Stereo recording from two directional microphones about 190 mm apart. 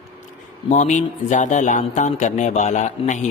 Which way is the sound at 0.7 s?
40° left (ahead or behind).